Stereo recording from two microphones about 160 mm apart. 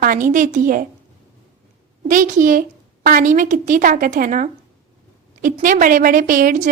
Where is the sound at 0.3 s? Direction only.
55° right (ahead or behind).